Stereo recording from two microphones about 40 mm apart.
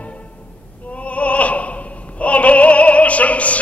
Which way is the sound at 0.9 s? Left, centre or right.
Left.